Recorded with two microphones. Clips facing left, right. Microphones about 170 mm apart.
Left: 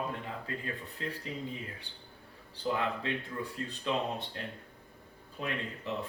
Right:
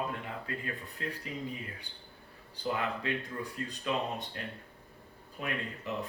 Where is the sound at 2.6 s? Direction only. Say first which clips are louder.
Left 1 dB; 30° left (ahead or behind).